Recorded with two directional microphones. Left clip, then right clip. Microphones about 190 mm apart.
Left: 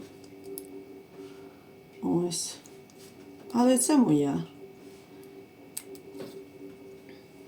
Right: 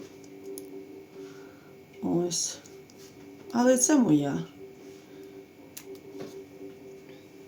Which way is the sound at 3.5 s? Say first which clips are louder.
Right 1 dB; 20° right (ahead or behind).